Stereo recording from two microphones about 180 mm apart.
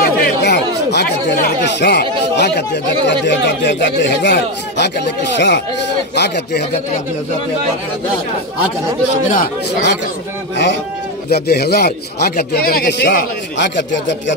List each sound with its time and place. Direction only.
0.0 s speech: 65° left (ahead or behind)
9.3 s speech: 55° left (ahead or behind)
11.2 s speech: 65° left (ahead or behind)